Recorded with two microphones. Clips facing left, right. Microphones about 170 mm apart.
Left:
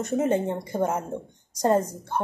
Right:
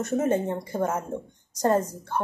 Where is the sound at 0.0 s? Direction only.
15° left (ahead or behind).